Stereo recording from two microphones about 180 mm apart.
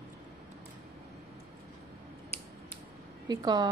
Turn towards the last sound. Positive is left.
turn(degrees=-20)  # may be behind; listen again after turning